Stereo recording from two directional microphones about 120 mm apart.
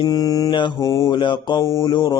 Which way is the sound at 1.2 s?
40° left (ahead or behind).